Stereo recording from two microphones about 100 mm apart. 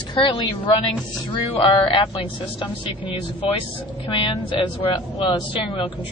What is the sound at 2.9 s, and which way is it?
Speech, 65° left (ahead or behind).